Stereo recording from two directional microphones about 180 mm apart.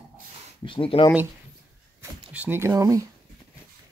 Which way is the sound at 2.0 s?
10° right (ahead or behind).